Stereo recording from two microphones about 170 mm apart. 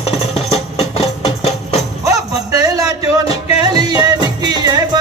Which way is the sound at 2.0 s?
20° right (ahead or behind).